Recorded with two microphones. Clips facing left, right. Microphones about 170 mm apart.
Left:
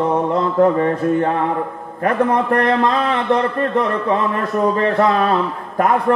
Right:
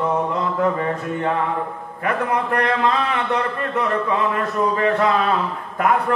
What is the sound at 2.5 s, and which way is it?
A man's voice, 40° left (ahead or behind).